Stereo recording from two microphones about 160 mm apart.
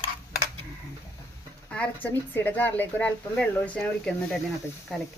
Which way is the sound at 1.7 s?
10° left (ahead or behind).